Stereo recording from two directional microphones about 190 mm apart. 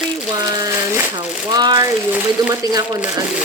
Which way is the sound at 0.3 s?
20° right (ahead or behind).